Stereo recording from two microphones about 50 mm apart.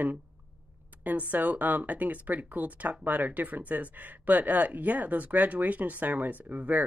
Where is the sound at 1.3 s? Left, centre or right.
Right.